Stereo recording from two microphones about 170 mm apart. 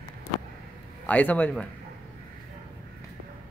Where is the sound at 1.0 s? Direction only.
10° left (ahead or behind).